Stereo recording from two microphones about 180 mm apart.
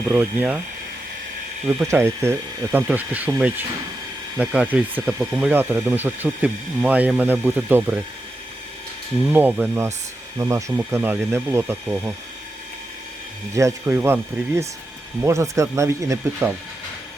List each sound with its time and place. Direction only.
0.1 s speech: 10° right (ahead or behind)
1.6 s speech: 15° right (ahead or behind)
9.3 s speech: 10° right (ahead or behind)
13.5 s speech: 15° right (ahead or behind)